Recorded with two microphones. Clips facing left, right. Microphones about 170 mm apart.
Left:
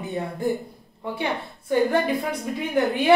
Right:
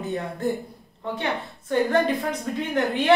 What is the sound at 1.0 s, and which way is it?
A woman's voice, 10° left (ahead or behind).